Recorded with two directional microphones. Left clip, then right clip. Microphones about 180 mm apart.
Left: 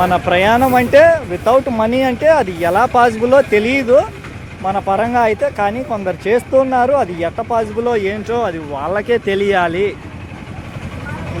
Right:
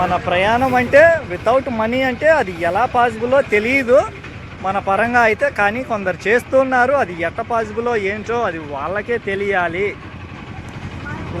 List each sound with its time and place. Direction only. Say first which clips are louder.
0.0 s speech: left 4 dB; 35° left (ahead or behind)
3.5 s speech: left 2 dB; 20° left (ahead or behind)